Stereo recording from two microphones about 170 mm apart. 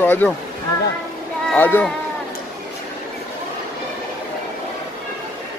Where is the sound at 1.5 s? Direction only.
10° left (ahead or behind).